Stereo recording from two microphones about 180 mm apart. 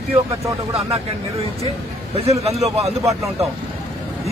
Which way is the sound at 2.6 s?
35° right (ahead or behind).